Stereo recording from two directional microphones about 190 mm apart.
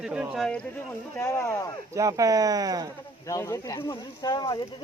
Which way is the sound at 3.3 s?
15° left (ahead or behind).